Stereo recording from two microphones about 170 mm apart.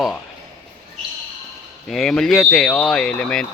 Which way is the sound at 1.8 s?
Centre (ahead or behind).